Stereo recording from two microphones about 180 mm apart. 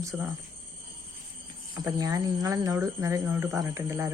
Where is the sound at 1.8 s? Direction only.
20° right (ahead or behind).